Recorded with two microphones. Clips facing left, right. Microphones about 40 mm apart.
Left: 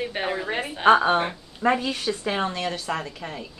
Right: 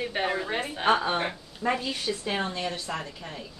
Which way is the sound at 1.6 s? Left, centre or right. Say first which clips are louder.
Left 6 dB; left.